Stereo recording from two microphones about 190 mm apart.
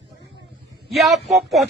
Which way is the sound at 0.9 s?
Centre (ahead or behind).